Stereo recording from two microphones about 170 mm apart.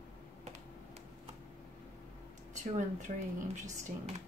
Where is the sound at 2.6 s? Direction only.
45° right (ahead or behind).